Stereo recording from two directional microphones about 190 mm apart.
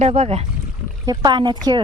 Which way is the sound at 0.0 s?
30° right (ahead or behind).